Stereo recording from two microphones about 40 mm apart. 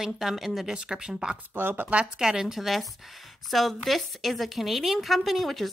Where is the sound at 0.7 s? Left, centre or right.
Right.